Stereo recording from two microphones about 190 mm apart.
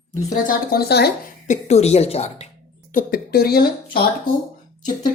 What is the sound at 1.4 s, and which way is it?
A woman's voice, 35° left (ahead or behind).